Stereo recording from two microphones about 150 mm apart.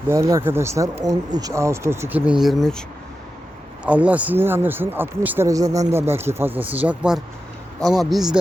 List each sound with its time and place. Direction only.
0.1 s speech: 20° right (ahead or behind); by 2.8 s centre (ahead or behind)
3.8 s speech: 10° right (ahead or behind)